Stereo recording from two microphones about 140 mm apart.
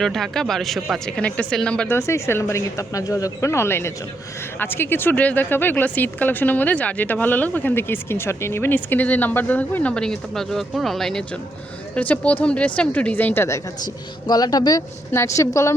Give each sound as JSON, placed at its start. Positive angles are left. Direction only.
{"t": 0.0, "sound": "speech", "side_deg": 5}
{"t": 2.0, "sound": "speech", "side_deg": 20}
{"t": 13.8, "sound": "speech", "side_deg": 30}